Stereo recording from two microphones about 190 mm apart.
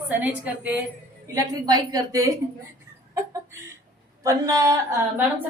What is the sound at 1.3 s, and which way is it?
A woman's voice, 20° right (ahead or behind).